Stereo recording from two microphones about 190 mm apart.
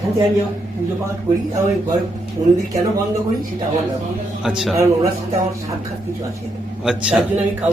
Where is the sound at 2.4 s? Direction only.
25° right (ahead or behind).